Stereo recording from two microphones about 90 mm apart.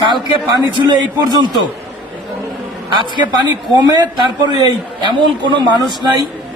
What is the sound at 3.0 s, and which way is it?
A man's voice, 55° right (ahead or behind).